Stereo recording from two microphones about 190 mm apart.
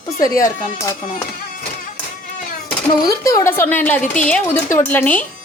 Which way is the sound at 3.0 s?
20° left (ahead or behind).